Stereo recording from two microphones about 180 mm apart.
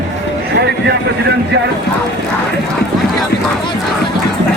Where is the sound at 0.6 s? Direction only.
75° right (ahead or behind).